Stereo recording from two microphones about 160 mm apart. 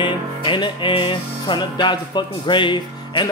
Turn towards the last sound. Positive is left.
turn(degrees=30)  # may be behind; listen again after turning